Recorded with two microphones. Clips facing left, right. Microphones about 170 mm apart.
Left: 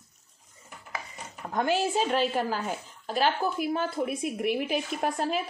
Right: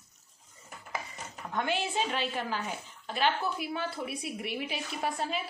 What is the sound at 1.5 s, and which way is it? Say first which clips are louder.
A woman's voice: left 6 dB; 40° left (ahead or behind).